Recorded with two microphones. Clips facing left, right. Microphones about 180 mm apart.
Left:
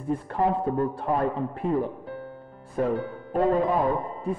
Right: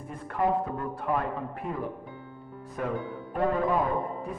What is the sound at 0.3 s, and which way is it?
Music, 30° left (ahead or behind).